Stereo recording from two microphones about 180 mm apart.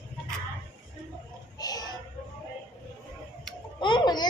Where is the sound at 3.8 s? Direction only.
25° left (ahead or behind).